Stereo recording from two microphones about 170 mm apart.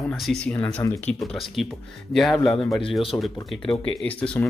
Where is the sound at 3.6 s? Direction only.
30° left (ahead or behind).